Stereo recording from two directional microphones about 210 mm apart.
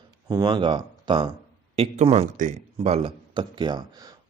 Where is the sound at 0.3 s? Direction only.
20° right (ahead or behind).